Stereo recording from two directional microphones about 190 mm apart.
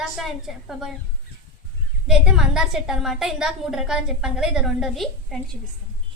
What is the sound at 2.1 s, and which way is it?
A woman's voice, centre (ahead or behind).